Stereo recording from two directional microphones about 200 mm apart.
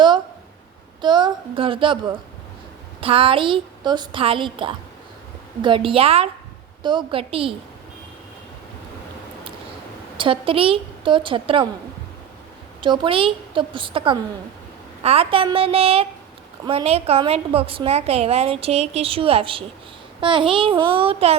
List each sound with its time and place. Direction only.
1.0 s a sound: 20° right (ahead or behind)
3.0 s a woman's voice: 30° right (ahead or behind)
10.2 s a woman's voice: 25° right (ahead or behind)
12.8 s a woman's voice: 25° right (ahead or behind)